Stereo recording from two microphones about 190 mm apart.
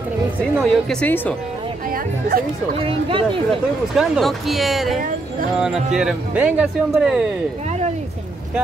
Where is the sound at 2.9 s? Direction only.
25° right (ahead or behind).